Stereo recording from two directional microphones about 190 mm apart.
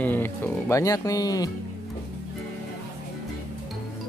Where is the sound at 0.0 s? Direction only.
10° left (ahead or behind).